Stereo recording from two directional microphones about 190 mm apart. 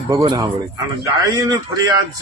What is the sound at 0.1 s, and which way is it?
A man's voice, 20° right (ahead or behind).